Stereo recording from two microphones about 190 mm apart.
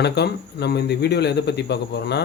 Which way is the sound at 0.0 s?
60° left (ahead or behind).